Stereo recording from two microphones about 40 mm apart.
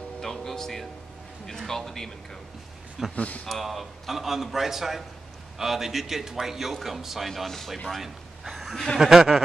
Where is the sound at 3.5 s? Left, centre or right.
Centre.